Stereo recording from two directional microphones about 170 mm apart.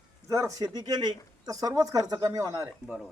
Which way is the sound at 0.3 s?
20° right (ahead or behind).